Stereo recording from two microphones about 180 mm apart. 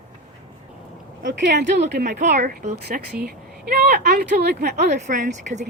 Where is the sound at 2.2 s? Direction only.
45° right (ahead or behind); by 4.9 s 65° right (ahead or behind).